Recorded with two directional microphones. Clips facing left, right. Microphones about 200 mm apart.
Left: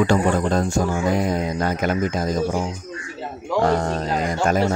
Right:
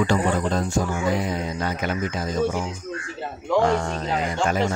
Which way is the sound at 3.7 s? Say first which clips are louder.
Left 3 dB; 40° left (ahead or behind).